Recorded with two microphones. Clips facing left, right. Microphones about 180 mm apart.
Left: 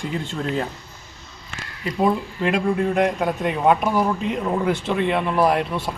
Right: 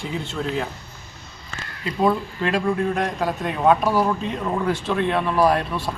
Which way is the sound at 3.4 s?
15° left (ahead or behind).